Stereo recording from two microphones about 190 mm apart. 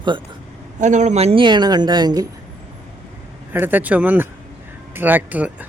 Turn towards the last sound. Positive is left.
turn(degrees=-10)  # may be behind; listen again after turning